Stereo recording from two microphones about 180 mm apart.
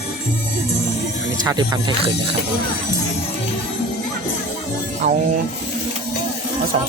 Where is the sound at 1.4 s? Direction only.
25° right (ahead or behind).